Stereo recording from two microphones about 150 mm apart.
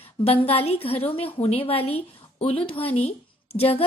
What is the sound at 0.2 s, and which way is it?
A woman's voice, 40° left (ahead or behind).